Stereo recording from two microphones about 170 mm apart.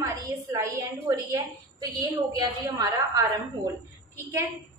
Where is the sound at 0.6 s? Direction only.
20° right (ahead or behind).